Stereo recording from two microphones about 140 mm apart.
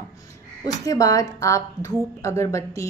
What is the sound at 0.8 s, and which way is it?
A woman's voice, 25° left (ahead or behind).